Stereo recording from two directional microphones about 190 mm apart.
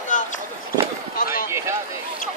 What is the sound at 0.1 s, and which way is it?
Chop, 40° left (ahead or behind).